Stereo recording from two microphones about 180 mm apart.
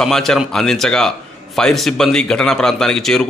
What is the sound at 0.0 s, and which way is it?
A man's voice, centre (ahead or behind).